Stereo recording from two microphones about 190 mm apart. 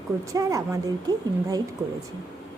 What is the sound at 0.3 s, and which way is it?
A woman's voice, 15° right (ahead or behind).